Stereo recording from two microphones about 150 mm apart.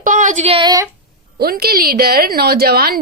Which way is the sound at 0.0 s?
60° right (ahead or behind).